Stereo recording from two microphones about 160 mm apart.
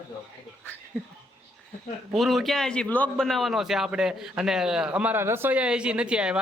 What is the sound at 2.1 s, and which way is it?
A man's voice, centre (ahead or behind).